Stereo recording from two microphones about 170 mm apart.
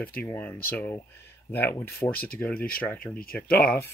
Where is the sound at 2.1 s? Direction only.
60° left (ahead or behind).